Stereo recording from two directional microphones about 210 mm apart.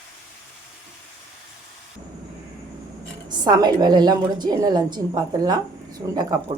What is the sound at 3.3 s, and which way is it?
A woman's voice, 20° right (ahead or behind).